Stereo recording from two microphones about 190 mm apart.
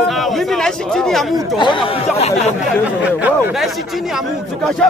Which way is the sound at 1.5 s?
25° left (ahead or behind).